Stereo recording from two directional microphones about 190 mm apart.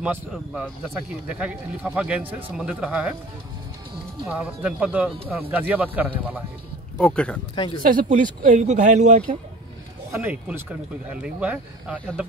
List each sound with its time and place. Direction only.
0.0 s speech: 5° right (ahead or behind)
4.3 s speech: 5° right (ahead or behind)
7.0 s speech: 5° left (ahead or behind)
7.5 s speech: 25° left (ahead or behind)
7.9 s speech: 45° right (ahead or behind)
10.1 s speech: 10° right (ahead or behind)